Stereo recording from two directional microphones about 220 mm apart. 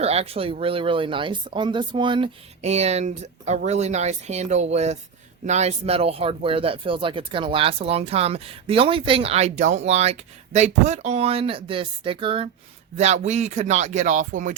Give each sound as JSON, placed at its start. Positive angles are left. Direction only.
{"t": 0.0, "sound": "speech", "side_deg": -30}